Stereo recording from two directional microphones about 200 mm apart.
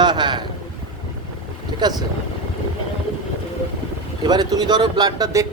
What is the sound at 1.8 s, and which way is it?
Speech, 20° right (ahead or behind).